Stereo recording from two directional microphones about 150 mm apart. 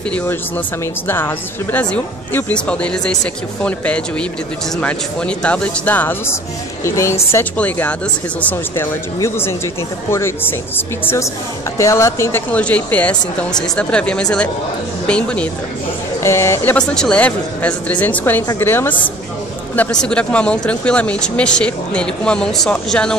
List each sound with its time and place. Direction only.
1.0 s a woman's voice: 15° left (ahead or behind)
11.8 s speech: 20° left (ahead or behind)
16.2 s speech: 15° left (ahead or behind)
16.7 s speech: 5° left (ahead or behind)